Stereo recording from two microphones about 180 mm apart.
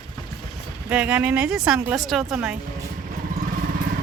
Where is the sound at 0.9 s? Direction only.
5° right (ahead or behind).